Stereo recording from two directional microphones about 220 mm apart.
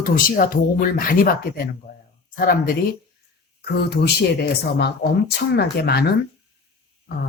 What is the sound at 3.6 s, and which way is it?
Speech, 50° left (ahead or behind).